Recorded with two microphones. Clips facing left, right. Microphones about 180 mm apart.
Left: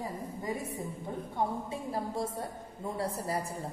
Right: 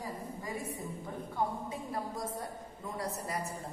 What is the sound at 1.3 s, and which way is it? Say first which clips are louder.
A woman's voice: left 1 dB; 30° left (ahead or behind).